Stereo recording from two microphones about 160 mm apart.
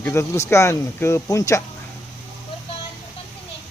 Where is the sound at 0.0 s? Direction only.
15° left (ahead or behind).